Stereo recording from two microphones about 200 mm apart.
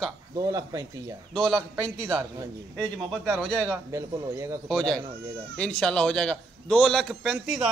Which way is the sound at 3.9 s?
15° right (ahead or behind).